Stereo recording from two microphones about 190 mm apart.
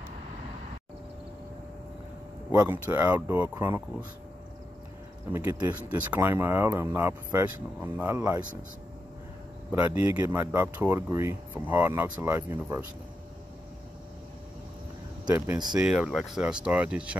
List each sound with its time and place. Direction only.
2.5 s speech: 10° right (ahead or behind)
5.3 s speech: 10° right (ahead or behind)
9.7 s speech: 10° right (ahead or behind)
15.2 s speech: 15° right (ahead or behind)
15.8 s speech: 5° right (ahead or behind)